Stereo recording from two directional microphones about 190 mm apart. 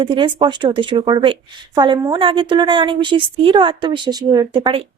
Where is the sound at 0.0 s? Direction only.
25° right (ahead or behind).